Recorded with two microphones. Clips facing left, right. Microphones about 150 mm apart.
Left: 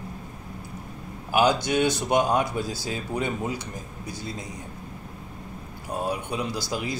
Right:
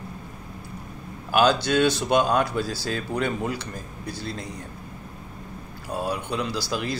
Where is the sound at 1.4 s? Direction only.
20° left (ahead or behind).